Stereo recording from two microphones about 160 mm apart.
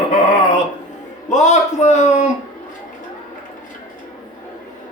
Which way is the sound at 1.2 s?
50° left (ahead or behind).